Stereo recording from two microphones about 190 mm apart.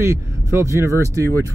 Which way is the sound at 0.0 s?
15° right (ahead or behind).